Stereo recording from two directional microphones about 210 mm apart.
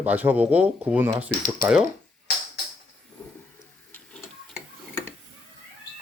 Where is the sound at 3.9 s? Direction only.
5° left (ahead or behind).